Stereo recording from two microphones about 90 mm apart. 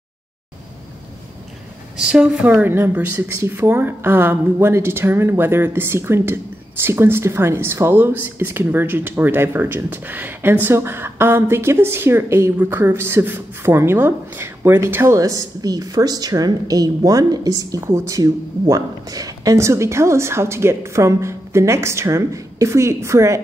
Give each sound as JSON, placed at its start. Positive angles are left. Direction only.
{"t": 2.0, "sound": "speech", "side_deg": -10}